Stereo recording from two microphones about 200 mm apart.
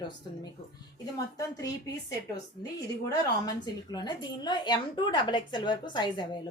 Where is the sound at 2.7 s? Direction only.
20° left (ahead or behind).